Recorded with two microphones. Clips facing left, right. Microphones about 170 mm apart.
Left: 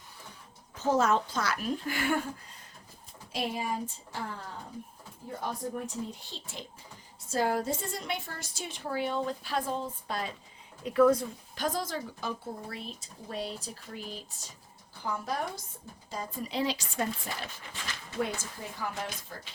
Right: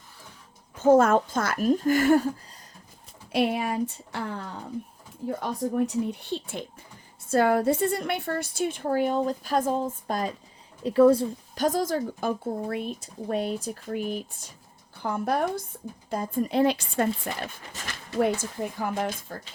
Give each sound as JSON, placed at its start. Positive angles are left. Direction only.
{"t": 0.8, "sound": "a woman's voice", "side_deg": -50}
{"t": 3.3, "sound": "speech", "side_deg": -65}
{"t": 5.4, "sound": "a woman's voice", "side_deg": -65}
{"t": 10.8, "sound": "speech", "side_deg": -30}
{"t": 11.5, "sound": "a woman's voice", "side_deg": -45}